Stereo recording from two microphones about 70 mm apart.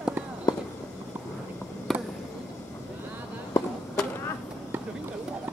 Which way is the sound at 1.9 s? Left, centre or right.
Centre.